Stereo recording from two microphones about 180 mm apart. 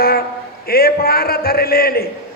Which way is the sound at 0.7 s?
55° left (ahead or behind).